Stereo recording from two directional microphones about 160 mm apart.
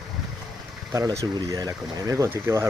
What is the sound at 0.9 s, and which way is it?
Speech, 20° right (ahead or behind).